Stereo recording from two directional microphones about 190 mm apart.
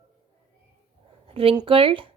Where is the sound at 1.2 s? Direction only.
30° right (ahead or behind).